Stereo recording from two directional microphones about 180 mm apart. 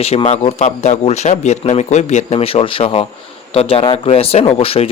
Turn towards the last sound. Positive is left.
turn(degrees=35)  # may be behind; listen again after turning